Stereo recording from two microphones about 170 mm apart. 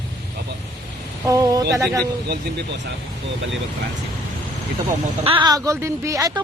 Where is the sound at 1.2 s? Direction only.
20° right (ahead or behind).